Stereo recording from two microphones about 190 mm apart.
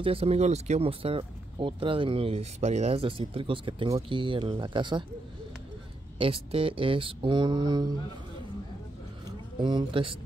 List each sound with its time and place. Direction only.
0.0 s speech: 30° right (ahead or behind)
6.1 s speech: 30° right (ahead or behind)
9.2 s a sound: 25° right (ahead or behind)